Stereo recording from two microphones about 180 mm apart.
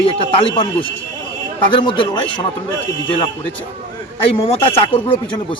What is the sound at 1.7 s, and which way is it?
Speech, 25° left (ahead or behind).